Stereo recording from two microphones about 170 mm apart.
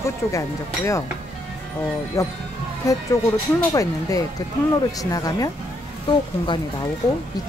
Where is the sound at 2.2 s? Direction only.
20° left (ahead or behind).